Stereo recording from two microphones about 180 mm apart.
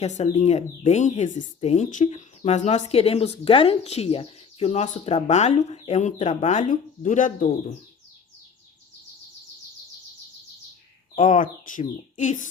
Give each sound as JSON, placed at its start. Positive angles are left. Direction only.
{"t": 0.0, "sound": "speech", "side_deg": 35}
{"t": 11.1, "sound": "speech", "side_deg": 45}